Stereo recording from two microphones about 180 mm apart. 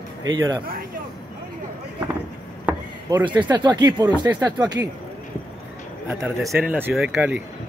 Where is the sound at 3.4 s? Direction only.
25° right (ahead or behind).